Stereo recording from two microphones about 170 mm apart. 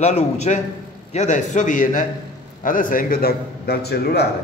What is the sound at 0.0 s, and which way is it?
A man's voice, 40° left (ahead or behind).